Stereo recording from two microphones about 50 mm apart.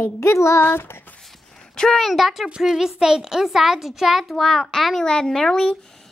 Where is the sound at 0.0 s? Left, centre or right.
Left.